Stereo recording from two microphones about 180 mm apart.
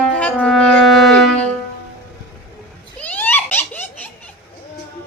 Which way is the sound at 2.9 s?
10° left (ahead or behind).